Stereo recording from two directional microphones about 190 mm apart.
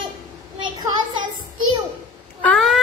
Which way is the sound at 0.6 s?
20° right (ahead or behind).